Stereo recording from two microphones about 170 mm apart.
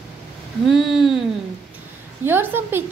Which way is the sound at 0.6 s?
Centre (ahead or behind).